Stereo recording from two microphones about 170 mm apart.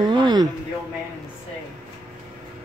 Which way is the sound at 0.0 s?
25° right (ahead or behind).